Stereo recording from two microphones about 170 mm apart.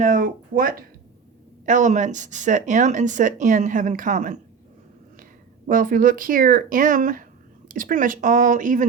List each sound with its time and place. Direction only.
0.0 s speech: 50° right (ahead or behind)
5.6 s speech: 55° right (ahead or behind)